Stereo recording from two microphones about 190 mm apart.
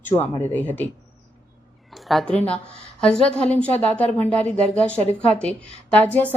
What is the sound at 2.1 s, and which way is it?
A woman's voice, 5° left (ahead or behind).